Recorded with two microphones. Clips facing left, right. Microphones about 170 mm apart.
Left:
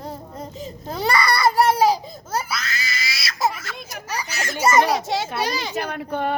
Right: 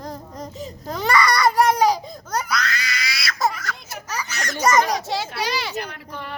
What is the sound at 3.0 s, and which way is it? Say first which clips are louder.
Crying: right 2 dB; 25° left (ahead or behind).